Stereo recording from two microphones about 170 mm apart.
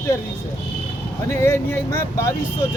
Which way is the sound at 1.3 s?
15° left (ahead or behind).